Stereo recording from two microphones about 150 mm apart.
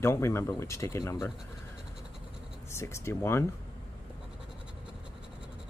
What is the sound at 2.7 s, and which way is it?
Speech, 20° left (ahead or behind).